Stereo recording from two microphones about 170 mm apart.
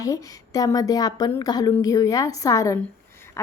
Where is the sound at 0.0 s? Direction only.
20° left (ahead or behind).